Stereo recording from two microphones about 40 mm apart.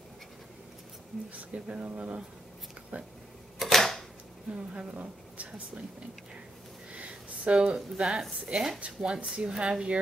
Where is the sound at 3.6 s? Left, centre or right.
Centre.